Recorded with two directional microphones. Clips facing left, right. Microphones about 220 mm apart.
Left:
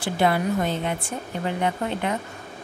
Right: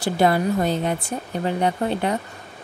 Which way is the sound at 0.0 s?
40° right (ahead or behind).